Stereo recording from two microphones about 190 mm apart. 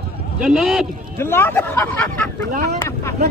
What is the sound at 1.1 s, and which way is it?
Speech, 10° left (ahead or behind).